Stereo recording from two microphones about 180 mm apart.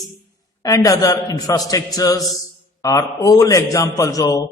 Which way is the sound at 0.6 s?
20° left (ahead or behind).